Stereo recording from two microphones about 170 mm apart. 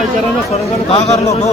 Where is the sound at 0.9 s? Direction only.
40° left (ahead or behind).